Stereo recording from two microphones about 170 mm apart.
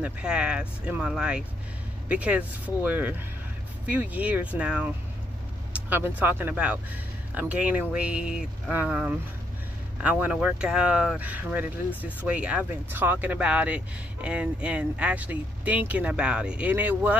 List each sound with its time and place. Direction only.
0.0 s speech: 5° right (ahead or behind)